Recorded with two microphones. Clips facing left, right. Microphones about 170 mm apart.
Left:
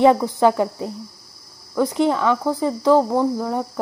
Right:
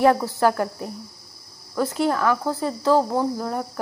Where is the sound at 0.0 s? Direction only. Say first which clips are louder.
Left 3 dB; 20° left (ahead or behind).